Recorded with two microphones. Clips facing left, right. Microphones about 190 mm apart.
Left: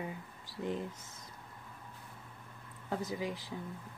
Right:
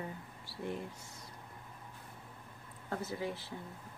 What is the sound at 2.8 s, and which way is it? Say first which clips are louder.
Speech: left 2 dB; 15° left (ahead or behind).